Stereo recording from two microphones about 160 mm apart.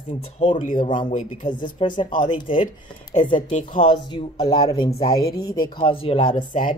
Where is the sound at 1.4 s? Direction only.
30° left (ahead or behind).